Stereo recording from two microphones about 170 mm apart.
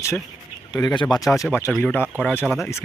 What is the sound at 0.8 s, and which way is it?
Speech, 10° left (ahead or behind).